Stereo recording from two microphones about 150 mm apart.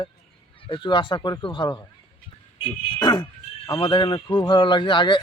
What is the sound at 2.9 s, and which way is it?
Speech, 25° left (ahead or behind).